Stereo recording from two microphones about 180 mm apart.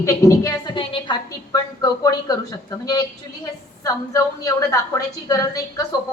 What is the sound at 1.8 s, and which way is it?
A woman's voice, 20° left (ahead or behind).